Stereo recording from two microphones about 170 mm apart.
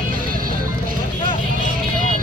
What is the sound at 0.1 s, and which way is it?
Music, 55° right (ahead or behind).